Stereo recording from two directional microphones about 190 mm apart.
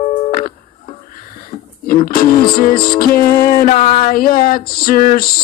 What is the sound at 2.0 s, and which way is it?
Music, 50° left (ahead or behind).